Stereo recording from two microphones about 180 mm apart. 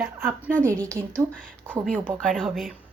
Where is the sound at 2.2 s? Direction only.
Centre (ahead or behind).